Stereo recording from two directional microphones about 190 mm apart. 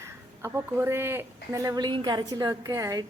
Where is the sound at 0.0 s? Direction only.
15° right (ahead or behind).